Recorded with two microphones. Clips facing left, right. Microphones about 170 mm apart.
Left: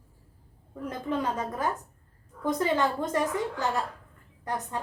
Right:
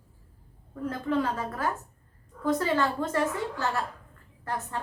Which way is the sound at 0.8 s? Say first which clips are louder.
Right 2 dB; 20° left (ahead or behind).